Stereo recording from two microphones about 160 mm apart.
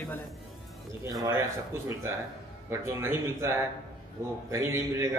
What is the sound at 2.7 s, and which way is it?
A man's voice, 15° right (ahead or behind).